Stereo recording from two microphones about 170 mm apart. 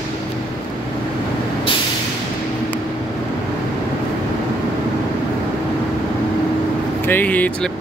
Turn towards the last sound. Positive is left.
turn(degrees=10)  # may be behind; listen again after turning